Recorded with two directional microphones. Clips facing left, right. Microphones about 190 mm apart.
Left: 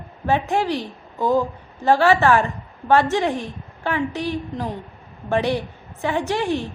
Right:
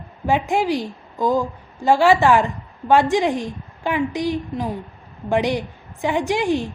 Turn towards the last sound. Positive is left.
turn(degrees=-15)  # may be behind; listen again after turning